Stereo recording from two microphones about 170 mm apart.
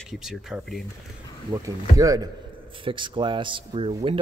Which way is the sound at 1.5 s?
20° right (ahead or behind).